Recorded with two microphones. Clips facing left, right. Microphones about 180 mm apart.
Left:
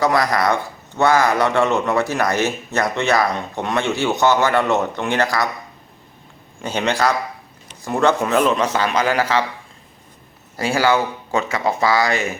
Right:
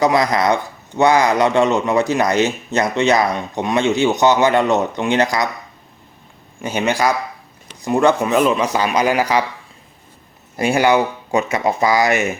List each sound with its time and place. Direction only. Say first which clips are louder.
0.0 s a man's voice: right 2 dB; 20° right (ahead or behind)
6.6 s a man's voice: right 1 dB; 10° right (ahead or behind)
10.6 s speech: right 3 dB; 20° right (ahead or behind)